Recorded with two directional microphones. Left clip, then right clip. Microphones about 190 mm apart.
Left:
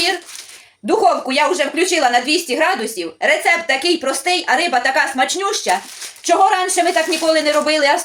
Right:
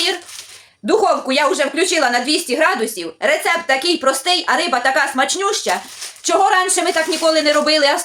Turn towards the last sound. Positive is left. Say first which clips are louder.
# even
turn(degrees=-15)  # may be behind; listen again after turning